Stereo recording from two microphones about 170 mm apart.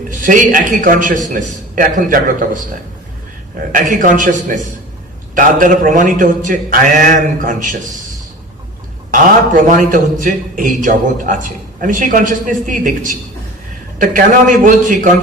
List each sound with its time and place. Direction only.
0.2 s a man's voice: 50° right (ahead or behind)
3.7 s a man's voice: 50° right (ahead or behind)
9.5 s a man's voice: 50° right (ahead or behind)